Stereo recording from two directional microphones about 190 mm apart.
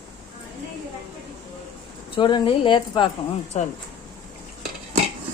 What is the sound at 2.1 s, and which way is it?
Speech, 25° left (ahead or behind).